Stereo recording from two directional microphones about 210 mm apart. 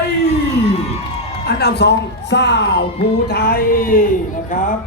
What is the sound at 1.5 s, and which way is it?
A man's voice, 50° left (ahead or behind).